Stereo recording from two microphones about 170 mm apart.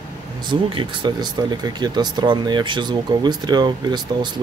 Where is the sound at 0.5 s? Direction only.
30° right (ahead or behind).